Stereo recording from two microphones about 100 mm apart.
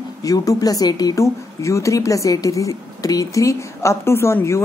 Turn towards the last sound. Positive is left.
turn(degrees=25)  # may be behind; listen again after turning